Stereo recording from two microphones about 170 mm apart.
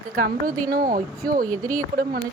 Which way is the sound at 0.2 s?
55° right (ahead or behind).